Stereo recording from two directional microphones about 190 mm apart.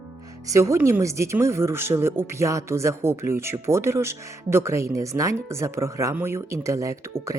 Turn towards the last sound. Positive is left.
turn(degrees=-15)  # may be behind; listen again after turning